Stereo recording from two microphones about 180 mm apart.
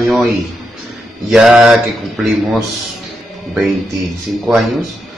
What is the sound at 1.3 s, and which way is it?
Speech, 5° right (ahead or behind).